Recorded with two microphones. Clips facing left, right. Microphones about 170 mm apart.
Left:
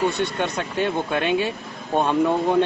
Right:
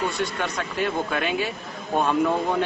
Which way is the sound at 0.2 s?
25° left (ahead or behind).